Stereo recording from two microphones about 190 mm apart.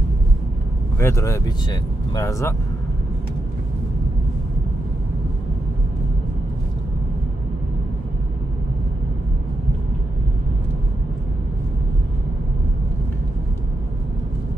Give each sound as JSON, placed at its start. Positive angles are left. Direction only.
{"t": 0.9, "sound": "speech", "side_deg": 15}